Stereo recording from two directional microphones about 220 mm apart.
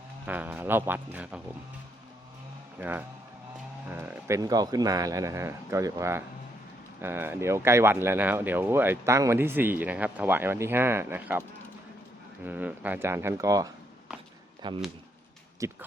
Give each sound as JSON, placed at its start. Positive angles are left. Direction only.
{"t": 0.3, "sound": "speech", "side_deg": -10}
{"t": 2.7, "sound": "speech", "side_deg": -10}
{"t": 12.5, "sound": "speech", "side_deg": -5}